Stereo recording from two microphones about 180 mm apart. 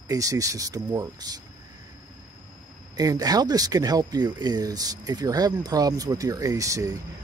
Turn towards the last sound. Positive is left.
turn(degrees=-20)  # may be behind; listen again after turning